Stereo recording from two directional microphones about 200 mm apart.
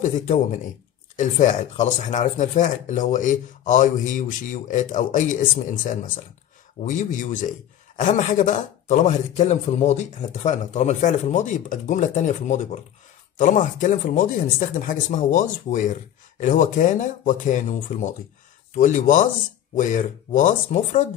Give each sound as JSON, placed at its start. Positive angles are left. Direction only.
{"t": 0.0, "sound": "a man's voice", "side_deg": 40}